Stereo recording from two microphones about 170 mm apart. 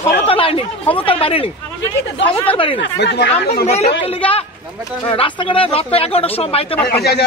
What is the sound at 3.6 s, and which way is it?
Speech, 40° left (ahead or behind).